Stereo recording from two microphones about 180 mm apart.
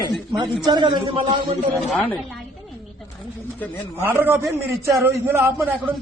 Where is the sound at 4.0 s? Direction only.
10° right (ahead or behind).